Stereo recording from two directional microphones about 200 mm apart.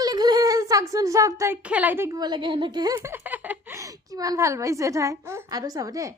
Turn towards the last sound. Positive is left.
turn(degrees=-15)  # may be behind; listen again after turning